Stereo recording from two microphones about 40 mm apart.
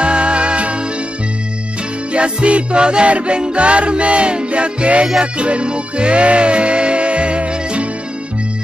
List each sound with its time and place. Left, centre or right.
0.0 s music: right
2.1 s music: right